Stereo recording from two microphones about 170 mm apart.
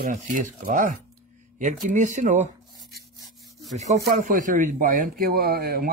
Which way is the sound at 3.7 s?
45° right (ahead or behind).